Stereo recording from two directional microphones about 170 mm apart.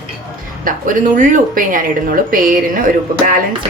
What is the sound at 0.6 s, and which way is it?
A woman's voice, 55° right (ahead or behind).